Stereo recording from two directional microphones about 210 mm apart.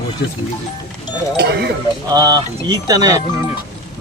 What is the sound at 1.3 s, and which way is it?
Speech, 50° right (ahead or behind).